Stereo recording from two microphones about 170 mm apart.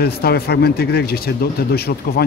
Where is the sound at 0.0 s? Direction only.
70° left (ahead or behind).